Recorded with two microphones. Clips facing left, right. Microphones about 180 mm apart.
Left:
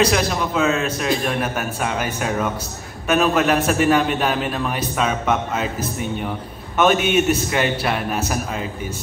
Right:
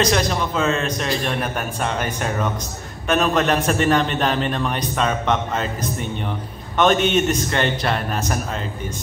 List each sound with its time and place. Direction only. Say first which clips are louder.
0.0 s a man's voice: left 1 dB; 5° left (ahead or behind)